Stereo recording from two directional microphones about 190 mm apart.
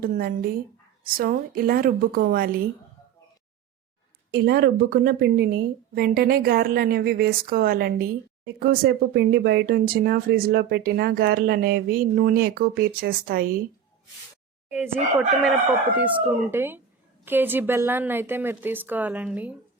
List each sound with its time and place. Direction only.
0.0 s a woman's voice: 50° right (ahead or behind)
4.3 s a woman's voice: 55° right (ahead or behind)
15.4 s a woman's voice: 10° right (ahead or behind)